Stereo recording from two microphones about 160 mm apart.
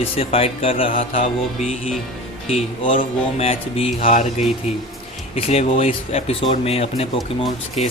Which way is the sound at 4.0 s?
50° left (ahead or behind).